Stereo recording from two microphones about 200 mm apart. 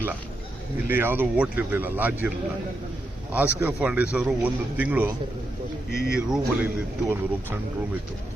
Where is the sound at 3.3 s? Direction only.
10° right (ahead or behind).